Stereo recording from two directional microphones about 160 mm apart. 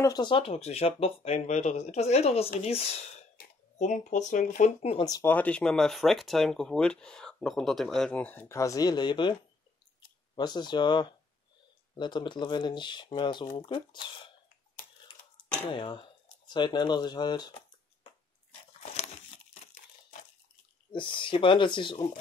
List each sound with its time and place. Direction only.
0.0 s speech: 25° left (ahead or behind); by 4.9 s 50° left (ahead or behind)
4.9 s speech: 25° left (ahead or behind)
5.3 s speech: 10° left (ahead or behind); by 9.3 s 30° left (ahead or behind)
10.3 s speech: 25° left (ahead or behind)
15.6 s speech: 30° left (ahead or behind)
18.7 s a sound: 40° left (ahead or behind)
20.9 s speech: 30° left (ahead or behind)